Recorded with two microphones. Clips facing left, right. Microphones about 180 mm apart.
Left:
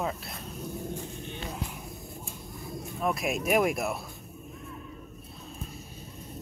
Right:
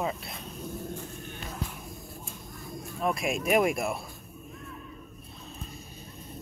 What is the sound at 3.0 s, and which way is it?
Speech, centre (ahead or behind).